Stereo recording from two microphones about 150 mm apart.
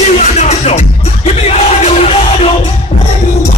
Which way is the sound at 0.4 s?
45° left (ahead or behind).